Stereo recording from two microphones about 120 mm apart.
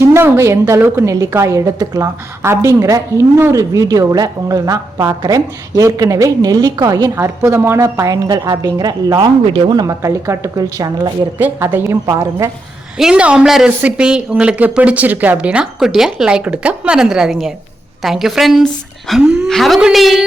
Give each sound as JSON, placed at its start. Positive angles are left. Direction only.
{"t": 0.0, "sound": "a woman's voice", "side_deg": -20}
{"t": 9.8, "sound": "a woman's voice", "side_deg": -25}
{"t": 11.3, "sound": "a woman's voice", "side_deg": -15}
{"t": 13.0, "sound": "a woman's voice", "side_deg": -10}